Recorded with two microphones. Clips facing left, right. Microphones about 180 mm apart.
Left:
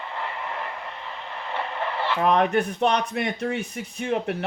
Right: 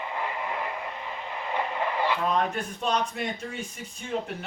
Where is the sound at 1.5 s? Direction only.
15° right (ahead or behind).